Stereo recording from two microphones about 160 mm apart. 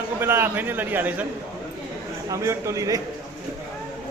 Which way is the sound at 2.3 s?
20° right (ahead or behind).